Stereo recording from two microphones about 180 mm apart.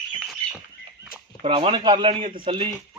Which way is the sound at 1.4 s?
30° right (ahead or behind).